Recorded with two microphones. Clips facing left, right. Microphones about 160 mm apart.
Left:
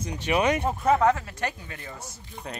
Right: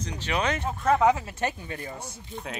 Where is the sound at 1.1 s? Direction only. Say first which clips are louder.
Right 2 dB; 20° right (ahead or behind).